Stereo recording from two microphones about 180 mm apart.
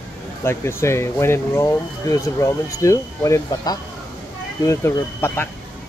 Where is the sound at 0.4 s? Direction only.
15° left (ahead or behind).